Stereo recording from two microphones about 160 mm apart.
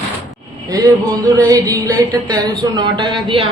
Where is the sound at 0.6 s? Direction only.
20° right (ahead or behind).